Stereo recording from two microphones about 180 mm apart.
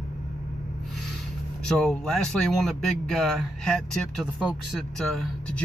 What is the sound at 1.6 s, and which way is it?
Speech, 5° left (ahead or behind).